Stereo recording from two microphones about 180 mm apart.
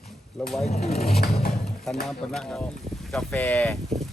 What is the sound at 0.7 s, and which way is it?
Speech, 40° left (ahead or behind).